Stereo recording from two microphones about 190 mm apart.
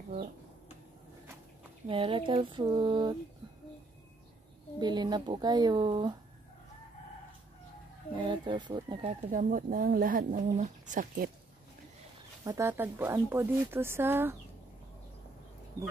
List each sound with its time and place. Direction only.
1.9 s speech: 25° right (ahead or behind)
4.7 s speech: 20° right (ahead or behind)
8.2 s speech: 25° right (ahead or behind)
9.3 s speech: 45° right (ahead or behind)
12.4 s speech: 15° right (ahead or behind)